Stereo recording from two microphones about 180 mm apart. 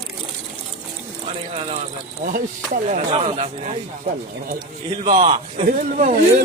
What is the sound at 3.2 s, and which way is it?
Speech, 35° right (ahead or behind).